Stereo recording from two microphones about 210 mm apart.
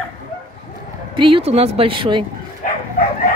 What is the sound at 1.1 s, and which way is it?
Speech, 25° right (ahead or behind).